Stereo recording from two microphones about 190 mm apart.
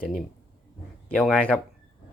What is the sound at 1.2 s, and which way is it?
Speech, 5° left (ahead or behind).